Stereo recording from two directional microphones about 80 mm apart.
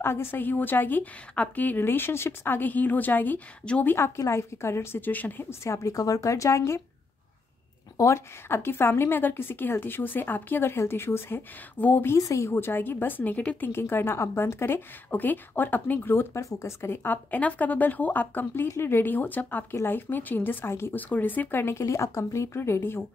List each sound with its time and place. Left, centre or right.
0.0 s a woman's voice: left
4.2 s speech: left
5.5 s speech: left
8.0 s a woman's voice: left
12.2 s a woman's voice: left